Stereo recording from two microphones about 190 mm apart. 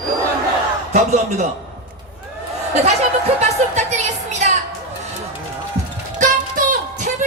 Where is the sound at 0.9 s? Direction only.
40° right (ahead or behind).